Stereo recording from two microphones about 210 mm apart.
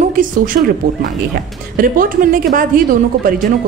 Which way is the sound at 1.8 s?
40° right (ahead or behind).